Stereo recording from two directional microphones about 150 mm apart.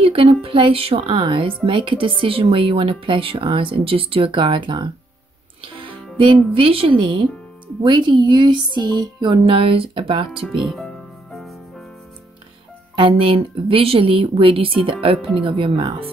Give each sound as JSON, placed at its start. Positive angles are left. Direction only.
{"t": 0.0, "sound": "speech", "side_deg": -40}
{"t": 5.6, "sound": "music", "side_deg": -35}
{"t": 6.1, "sound": "speech", "side_deg": -35}
{"t": 10.4, "sound": "speech", "side_deg": 0}
{"t": 12.9, "sound": "speech", "side_deg": -35}